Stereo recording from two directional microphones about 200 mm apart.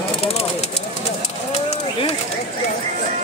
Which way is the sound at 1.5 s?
30° left (ahead or behind).